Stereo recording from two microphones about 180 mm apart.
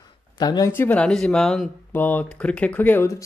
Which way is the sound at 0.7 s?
10° left (ahead or behind).